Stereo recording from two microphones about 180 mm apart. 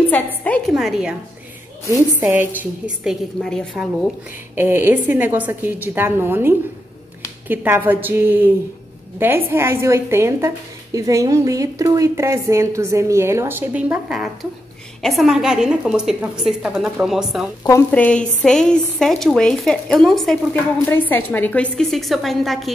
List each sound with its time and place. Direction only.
0.1 s a woman's voice: 10° left (ahead or behind)
1.9 s a woman's voice: 15° right (ahead or behind); by 4.1 s centre (ahead or behind)
4.6 s a woman's voice: 15° right (ahead or behind)
17.6 s a woman's voice: 10° left (ahead or behind)